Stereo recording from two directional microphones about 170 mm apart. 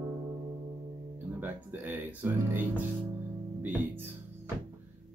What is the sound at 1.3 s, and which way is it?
Speech, 10° right (ahead or behind).